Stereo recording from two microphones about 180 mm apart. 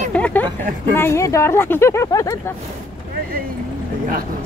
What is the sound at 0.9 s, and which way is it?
Speech, 15° left (ahead or behind).